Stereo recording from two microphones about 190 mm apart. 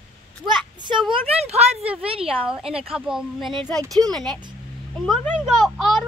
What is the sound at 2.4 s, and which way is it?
Speech, 5° right (ahead or behind).